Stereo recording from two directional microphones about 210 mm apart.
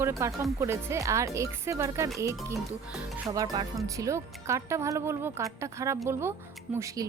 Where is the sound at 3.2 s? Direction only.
15° right (ahead or behind).